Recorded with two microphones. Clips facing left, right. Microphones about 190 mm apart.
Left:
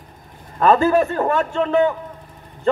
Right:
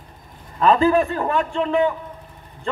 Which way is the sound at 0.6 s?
45° left (ahead or behind).